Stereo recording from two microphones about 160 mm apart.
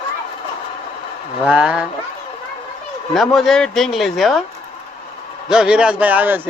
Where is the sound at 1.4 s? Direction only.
5° right (ahead or behind).